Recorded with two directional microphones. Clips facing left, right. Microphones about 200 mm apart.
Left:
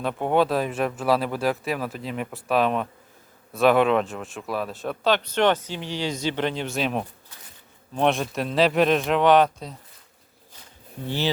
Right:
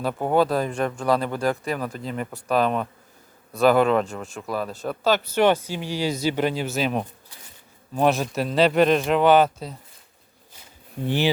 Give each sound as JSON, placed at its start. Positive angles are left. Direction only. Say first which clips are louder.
{"t": 0.0, "sound": "speech", "louder": "right 1 dB", "side_deg": 0}
{"t": 11.0, "sound": "speech", "louder": "right 4 dB", "side_deg": -15}